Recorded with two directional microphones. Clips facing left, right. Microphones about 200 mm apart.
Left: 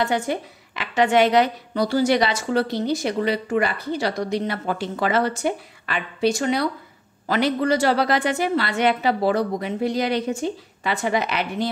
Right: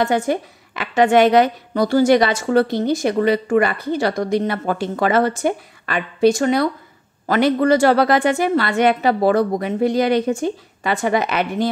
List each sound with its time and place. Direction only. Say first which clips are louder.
0.0 s a woman's voice: right 4 dB; 45° right (ahead or behind)